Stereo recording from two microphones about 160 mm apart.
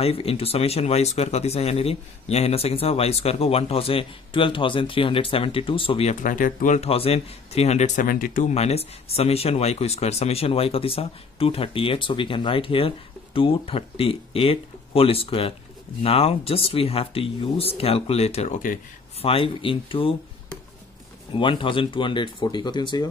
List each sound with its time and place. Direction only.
0.0 s speech: 35° left (ahead or behind)
6.2 s speech: 55° left (ahead or behind)
6.9 s speech: 35° left (ahead or behind)